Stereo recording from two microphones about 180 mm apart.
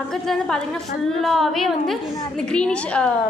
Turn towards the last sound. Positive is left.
turn(degrees=5)  # may be behind; listen again after turning